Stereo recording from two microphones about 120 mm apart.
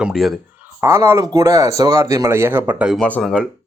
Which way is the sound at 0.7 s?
20° right (ahead or behind).